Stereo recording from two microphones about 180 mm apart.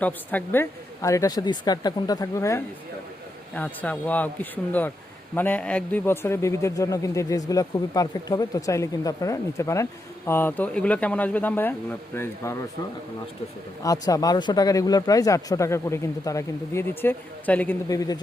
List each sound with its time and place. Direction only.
0.0 s a man's voice: 10° left (ahead or behind)
13.8 s speech: 20° left (ahead or behind)
17.8 s speech: 20° left (ahead or behind)